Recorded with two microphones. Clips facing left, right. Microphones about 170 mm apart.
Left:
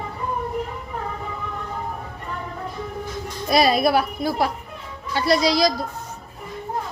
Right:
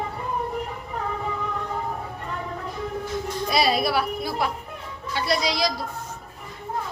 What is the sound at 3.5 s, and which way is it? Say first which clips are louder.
A woman's voice: left 5 dB; 45° left (ahead or behind).